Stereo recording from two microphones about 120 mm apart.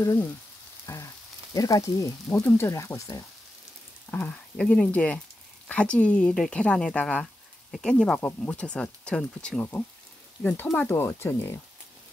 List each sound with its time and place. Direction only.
0.8 s speech: 25° left (ahead or behind)
4.1 s speech: 10° left (ahead or behind)